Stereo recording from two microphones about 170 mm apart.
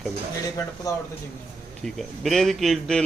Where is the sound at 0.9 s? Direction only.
20° left (ahead or behind).